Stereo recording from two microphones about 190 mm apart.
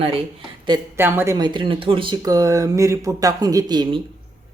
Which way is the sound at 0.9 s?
10° right (ahead or behind).